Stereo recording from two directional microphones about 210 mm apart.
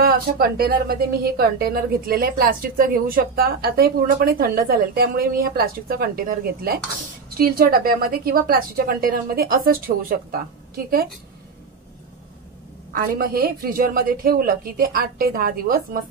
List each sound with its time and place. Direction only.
0.0 s a woman's voice: 45° right (ahead or behind)
12.9 s a woman's voice: 45° right (ahead or behind)